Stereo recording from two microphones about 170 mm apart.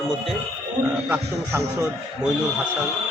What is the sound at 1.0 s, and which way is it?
Speech, 15° right (ahead or behind).